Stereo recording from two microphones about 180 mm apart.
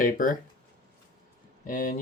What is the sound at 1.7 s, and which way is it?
Speech, 50° left (ahead or behind).